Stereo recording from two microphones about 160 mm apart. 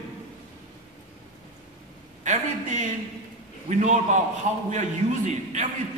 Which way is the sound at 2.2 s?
50° right (ahead or behind).